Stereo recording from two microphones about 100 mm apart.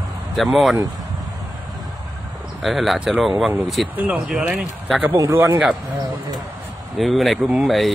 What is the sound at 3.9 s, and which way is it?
Speech, 15° right (ahead or behind).